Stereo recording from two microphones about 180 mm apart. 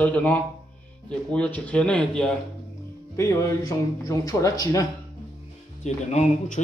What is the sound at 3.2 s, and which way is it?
Speech, 20° left (ahead or behind).